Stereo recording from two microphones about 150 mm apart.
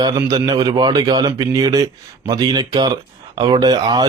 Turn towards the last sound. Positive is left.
turn(degrees=-25)  # may be behind; listen again after turning